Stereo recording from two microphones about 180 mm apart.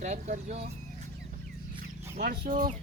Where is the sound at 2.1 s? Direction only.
55° right (ahead or behind).